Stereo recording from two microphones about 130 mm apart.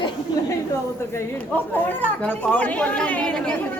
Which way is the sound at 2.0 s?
15° left (ahead or behind).